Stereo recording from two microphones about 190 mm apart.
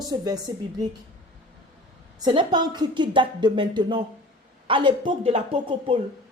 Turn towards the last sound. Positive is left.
turn(degrees=-25)  # may be behind; listen again after turning